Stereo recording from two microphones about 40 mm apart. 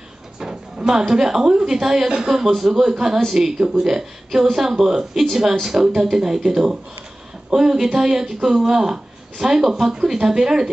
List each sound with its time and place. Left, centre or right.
0.4 s speech: centre
3.5 s speech: right
3.8 s speech: centre